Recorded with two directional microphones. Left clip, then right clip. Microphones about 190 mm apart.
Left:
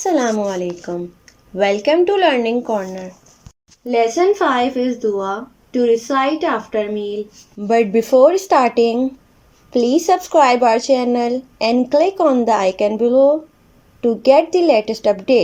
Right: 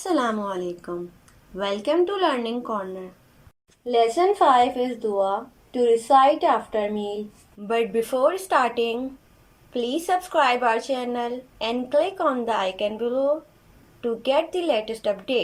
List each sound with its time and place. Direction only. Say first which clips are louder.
0.0 s speech: left 7 dB; 15° left (ahead or behind)
4.0 s speech: left 3 dB; 40° left (ahead or behind)
7.7 s speech: left 9 dB; 25° left (ahead or behind)